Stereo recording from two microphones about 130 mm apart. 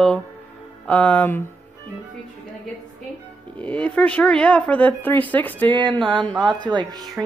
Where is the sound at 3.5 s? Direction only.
10° left (ahead or behind).